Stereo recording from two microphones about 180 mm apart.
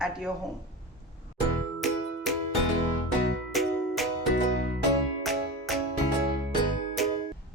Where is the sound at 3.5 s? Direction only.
Centre (ahead or behind).